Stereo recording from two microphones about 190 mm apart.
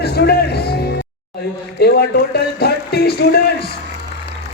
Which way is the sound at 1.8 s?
55° left (ahead or behind).